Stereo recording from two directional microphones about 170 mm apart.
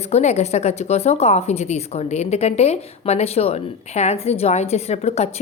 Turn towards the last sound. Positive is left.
turn(degrees=40)  # may be behind; listen again after turning